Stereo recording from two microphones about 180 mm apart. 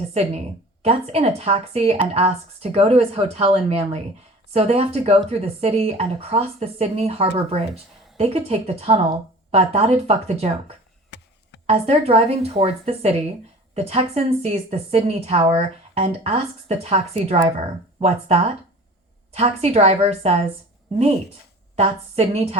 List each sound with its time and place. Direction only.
0.1 s a woman's voice: 35° right (ahead or behind)
11.6 s a woman's voice: 35° right (ahead or behind)
21.8 s a woman's voice: 35° right (ahead or behind)